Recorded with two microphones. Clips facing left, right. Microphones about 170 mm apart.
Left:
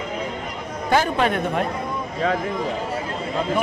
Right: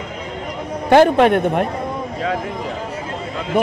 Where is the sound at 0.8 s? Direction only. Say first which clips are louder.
Right 9 dB; 65° right (ahead or behind).